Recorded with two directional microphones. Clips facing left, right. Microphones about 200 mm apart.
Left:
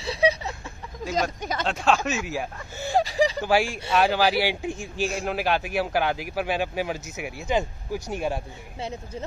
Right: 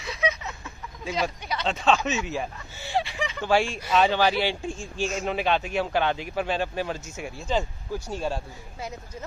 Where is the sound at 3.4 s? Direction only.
10° left (ahead or behind).